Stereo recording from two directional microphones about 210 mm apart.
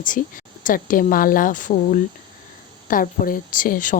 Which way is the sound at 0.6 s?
40° left (ahead or behind).